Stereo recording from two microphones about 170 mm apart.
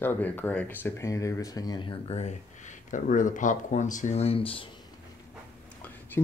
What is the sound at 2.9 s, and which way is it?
Speech, 50° left (ahead or behind).